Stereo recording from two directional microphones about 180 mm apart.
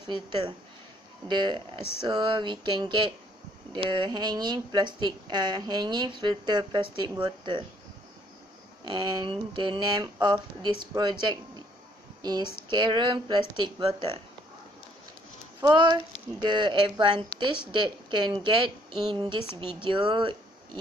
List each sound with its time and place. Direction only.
0.0 s speech: 25° right (ahead or behind)
8.8 s speech: 25° right (ahead or behind)
15.6 s speech: 25° right (ahead or behind)